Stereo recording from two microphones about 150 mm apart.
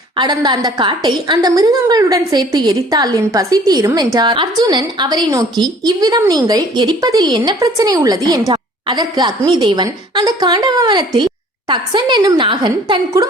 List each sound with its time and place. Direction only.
0.2 s a woman's voice: 30° right (ahead or behind)